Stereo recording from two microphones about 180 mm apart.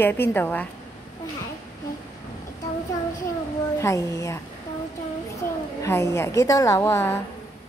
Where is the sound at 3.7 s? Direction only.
15° left (ahead or behind).